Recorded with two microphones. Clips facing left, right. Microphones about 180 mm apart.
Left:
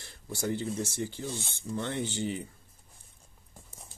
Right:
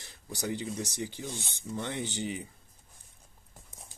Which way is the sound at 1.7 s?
60° left (ahead or behind).